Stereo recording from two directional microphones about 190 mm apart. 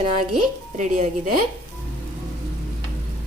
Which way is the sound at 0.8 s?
40° right (ahead or behind).